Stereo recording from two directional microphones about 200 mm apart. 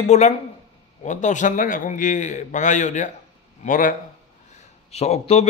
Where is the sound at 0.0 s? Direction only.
35° left (ahead or behind).